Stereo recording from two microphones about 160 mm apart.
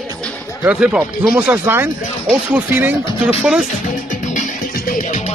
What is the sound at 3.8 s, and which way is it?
Music, 50° left (ahead or behind).